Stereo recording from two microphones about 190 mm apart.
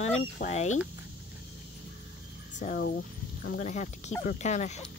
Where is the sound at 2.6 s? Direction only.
50° left (ahead or behind).